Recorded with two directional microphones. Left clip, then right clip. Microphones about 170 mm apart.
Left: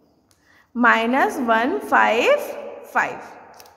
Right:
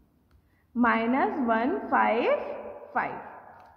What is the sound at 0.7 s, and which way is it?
A woman's voice, 45° left (ahead or behind).